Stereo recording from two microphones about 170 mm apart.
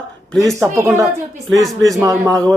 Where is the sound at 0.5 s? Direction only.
15° right (ahead or behind).